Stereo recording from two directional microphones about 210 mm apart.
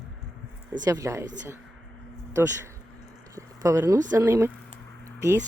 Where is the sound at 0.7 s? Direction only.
15° right (ahead or behind).